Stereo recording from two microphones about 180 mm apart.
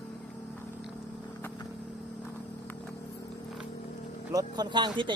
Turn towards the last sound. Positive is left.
turn(degrees=-25)  # may be behind; listen again after turning